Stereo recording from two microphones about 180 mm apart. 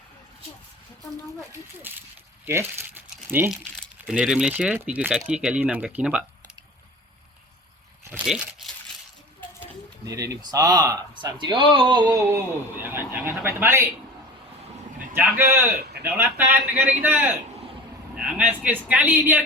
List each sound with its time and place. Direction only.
1.9 s speech: 10° right (ahead or behind)
8.2 s crumpling: 5° right (ahead or behind)
10.1 s speech: 20° right (ahead or behind)
15.2 s speech: 10° right (ahead or behind)
15.7 s a sound: 60° right (ahead or behind)
16.0 s speech: 10° right (ahead or behind)